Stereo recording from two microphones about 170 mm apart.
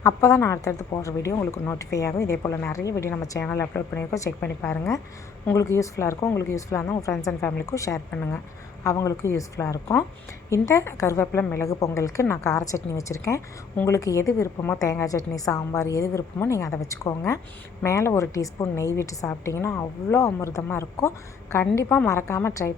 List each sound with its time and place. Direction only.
0.0 s a woman's voice: 15° left (ahead or behind)